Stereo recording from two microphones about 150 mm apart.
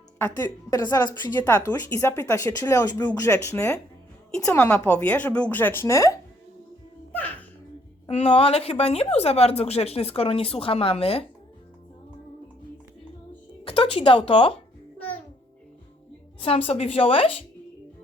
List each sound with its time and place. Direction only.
0.3 s speech: 25° left (ahead or behind)
1.4 s a woman's voice: 15° left (ahead or behind)
7.1 s music: 10° left (ahead or behind)
8.0 s a woman's voice: 40° left (ahead or behind)
13.7 s a woman's voice: 40° left (ahead or behind)
14.9 s music: 10° left (ahead or behind)
16.4 s a woman's voice: 40° left (ahead or behind)